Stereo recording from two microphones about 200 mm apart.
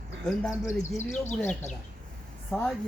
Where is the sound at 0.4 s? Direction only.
Centre (ahead or behind).